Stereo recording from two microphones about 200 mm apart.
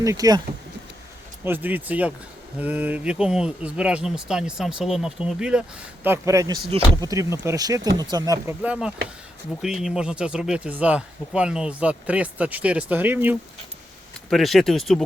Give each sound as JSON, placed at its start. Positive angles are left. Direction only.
{"t": 0.0, "sound": "speech", "side_deg": -15}
{"t": 1.5, "sound": "speech", "side_deg": -10}
{"t": 14.3, "sound": "speech", "side_deg": 0}